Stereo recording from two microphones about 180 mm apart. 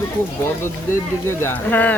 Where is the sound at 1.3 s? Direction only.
10° left (ahead or behind).